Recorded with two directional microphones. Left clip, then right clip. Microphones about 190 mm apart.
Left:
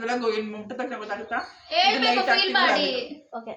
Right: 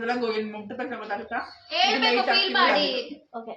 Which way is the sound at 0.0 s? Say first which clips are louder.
Left 1 dB; 15° left (ahead or behind).